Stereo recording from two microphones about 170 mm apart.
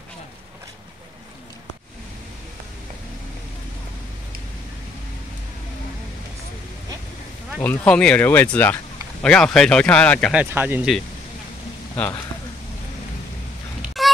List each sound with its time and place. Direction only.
7.6 s speech: 10° left (ahead or behind)
10.3 s speech: 10° right (ahead or behind)
11.9 s speech: 15° left (ahead or behind)
14.0 s a sound: centre (ahead or behind)